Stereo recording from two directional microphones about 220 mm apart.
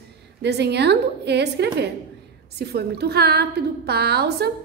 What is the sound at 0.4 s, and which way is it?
A woman's voice, 50° right (ahead or behind).